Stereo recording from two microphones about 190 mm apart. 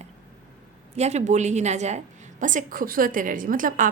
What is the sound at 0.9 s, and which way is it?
A woman's voice, 35° right (ahead or behind).